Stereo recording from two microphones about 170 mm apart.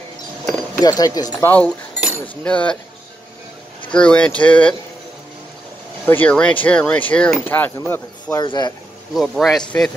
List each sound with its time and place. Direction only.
0.5 s speech: 20° left (ahead or behind)
2.2 s speech: 5° left (ahead or behind)
3.9 s speech: 5° left (ahead or behind)
6.0 s speech: 10° left (ahead or behind)
8.4 s speech: 25° left (ahead or behind)
9.1 s a man's voice: centre (ahead or behind)